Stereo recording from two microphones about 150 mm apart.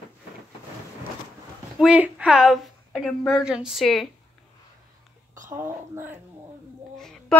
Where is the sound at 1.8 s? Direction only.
5° right (ahead or behind).